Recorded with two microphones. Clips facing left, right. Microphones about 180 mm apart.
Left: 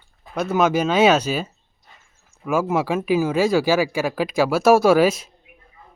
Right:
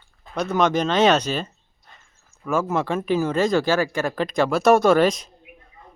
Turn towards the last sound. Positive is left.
turn(degrees=5)  # may be behind; listen again after turning